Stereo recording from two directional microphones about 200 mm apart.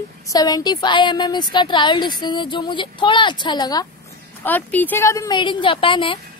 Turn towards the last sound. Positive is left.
turn(degrees=25)  # may be behind; listen again after turning